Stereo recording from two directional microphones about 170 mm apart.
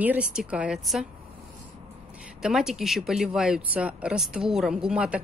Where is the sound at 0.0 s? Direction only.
10° right (ahead or behind).